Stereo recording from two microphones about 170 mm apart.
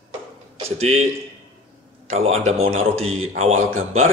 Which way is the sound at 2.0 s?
40° right (ahead or behind).